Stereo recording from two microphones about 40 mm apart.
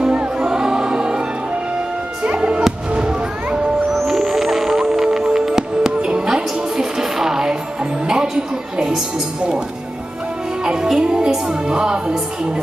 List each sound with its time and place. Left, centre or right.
0.0 s music: right
2.2 s music: right
4.1 s music: centre
6.8 s music: centre
8.7 s music: centre
10.6 s music: centre